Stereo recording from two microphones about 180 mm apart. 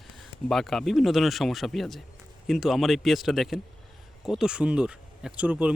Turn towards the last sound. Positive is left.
turn(degrees=-5)  # may be behind; listen again after turning